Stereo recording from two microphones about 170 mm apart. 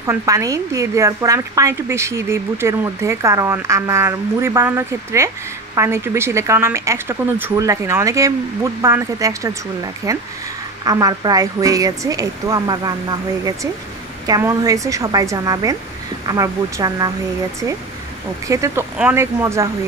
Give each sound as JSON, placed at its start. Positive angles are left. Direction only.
{"t": 0.0, "sound": "a woman's voice", "side_deg": -20}
{"t": 18.5, "sound": "speech", "side_deg": -20}